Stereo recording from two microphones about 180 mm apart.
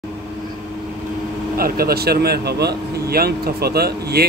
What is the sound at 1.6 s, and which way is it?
A man's voice, 55° right (ahead or behind).